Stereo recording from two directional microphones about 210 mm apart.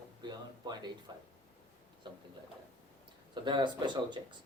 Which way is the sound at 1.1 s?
20° right (ahead or behind).